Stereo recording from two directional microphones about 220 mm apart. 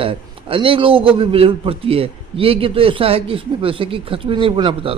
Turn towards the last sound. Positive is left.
turn(degrees=-25)  # may be behind; listen again after turning